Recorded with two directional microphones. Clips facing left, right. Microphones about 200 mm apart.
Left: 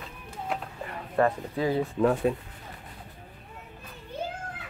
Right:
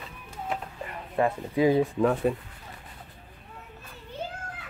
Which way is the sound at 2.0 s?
Centre (ahead or behind).